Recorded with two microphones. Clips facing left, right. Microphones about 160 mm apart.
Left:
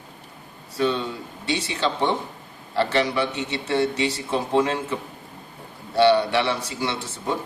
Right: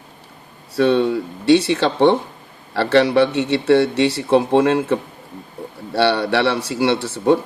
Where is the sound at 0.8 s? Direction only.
70° right (ahead or behind).